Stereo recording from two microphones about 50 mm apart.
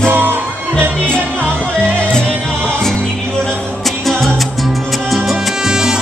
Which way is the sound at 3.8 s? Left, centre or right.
Centre.